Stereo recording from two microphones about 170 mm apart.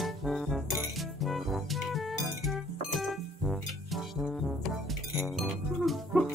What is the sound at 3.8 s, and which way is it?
Music, centre (ahead or behind).